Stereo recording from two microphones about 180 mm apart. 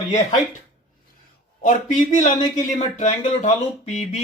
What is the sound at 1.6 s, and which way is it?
A man's voice, 45° left (ahead or behind).